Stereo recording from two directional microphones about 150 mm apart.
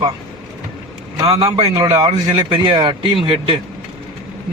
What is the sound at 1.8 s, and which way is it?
A man's voice, 25° right (ahead or behind).